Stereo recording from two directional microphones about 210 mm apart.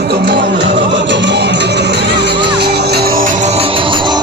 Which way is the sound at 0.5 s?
60° right (ahead or behind).